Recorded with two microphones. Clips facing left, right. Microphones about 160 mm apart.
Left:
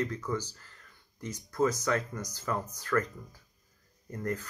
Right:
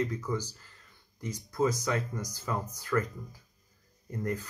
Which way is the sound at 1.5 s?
15° right (ahead or behind).